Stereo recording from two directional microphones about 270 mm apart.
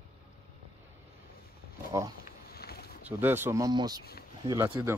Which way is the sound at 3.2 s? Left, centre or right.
Centre.